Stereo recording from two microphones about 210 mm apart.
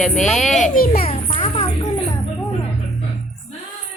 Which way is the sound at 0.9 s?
30° left (ahead or behind).